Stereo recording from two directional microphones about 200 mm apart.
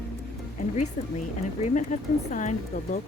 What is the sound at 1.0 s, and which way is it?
Speech, 40° left (ahead or behind).